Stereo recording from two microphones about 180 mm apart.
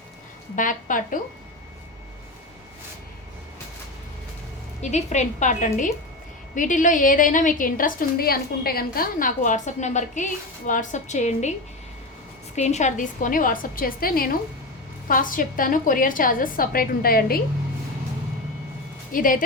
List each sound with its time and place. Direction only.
0.5 s a woman's voice: 45° left (ahead or behind)
4.8 s a woman's voice: 40° left (ahead or behind)
12.5 s a woman's voice: 40° left (ahead or behind); by 17.4 s 55° left (ahead or behind)
19.1 s a woman's voice: 50° left (ahead or behind)